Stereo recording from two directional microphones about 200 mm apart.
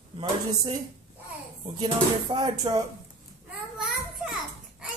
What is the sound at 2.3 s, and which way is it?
Speech, 20° right (ahead or behind).